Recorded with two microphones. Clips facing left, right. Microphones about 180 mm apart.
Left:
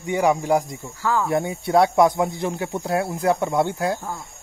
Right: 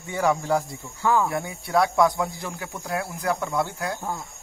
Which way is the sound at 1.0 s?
20° right (ahead or behind).